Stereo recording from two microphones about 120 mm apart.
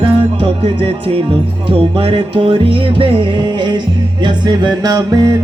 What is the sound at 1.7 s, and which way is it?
Music, 50° right (ahead or behind).